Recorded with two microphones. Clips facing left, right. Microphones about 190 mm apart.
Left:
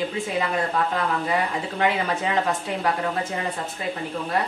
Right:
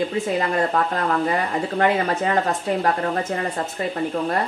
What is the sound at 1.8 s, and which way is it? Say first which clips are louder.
Speech: right 3 dB; 45° right (ahead or behind).